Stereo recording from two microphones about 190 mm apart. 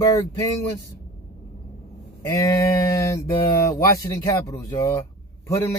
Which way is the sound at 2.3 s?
15° left (ahead or behind).